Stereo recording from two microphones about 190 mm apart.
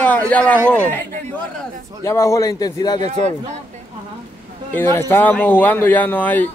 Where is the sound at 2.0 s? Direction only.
15° left (ahead or behind).